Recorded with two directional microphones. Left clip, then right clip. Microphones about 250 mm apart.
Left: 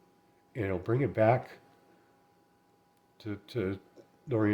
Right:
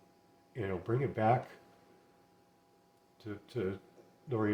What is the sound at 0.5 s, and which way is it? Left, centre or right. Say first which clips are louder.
Speech: left 4 dB; left.